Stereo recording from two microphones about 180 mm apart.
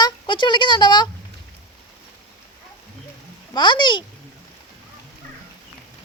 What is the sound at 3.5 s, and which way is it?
Speech, 25° left (ahead or behind).